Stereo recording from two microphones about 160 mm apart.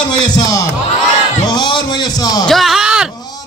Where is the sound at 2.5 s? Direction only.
Centre (ahead or behind).